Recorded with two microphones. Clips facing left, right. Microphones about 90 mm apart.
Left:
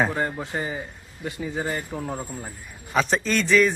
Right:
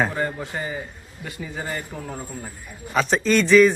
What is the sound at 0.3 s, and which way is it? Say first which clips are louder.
A man's voice: even; 15° left (ahead or behind).